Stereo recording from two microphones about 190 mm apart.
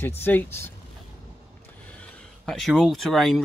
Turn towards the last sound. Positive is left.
turn(degrees=0)  # may be behind; listen again after turning